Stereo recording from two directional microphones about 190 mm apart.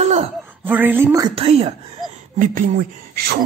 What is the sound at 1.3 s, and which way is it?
Speech, 35° right (ahead or behind).